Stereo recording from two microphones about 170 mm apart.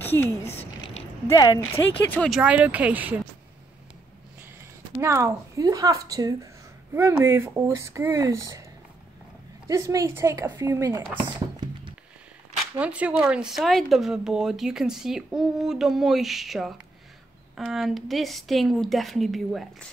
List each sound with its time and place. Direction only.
0.0 s speech: 10° left (ahead or behind)
0.5 s a sound: 35° left (ahead or behind)
1.3 s speech: 15° left (ahead or behind)
2.2 s speech: 5° right (ahead or behind)
4.6 s speech: 15° right (ahead or behind)
9.7 s speech: 20° right (ahead or behind)
12.7 s speech: 10° right (ahead or behind)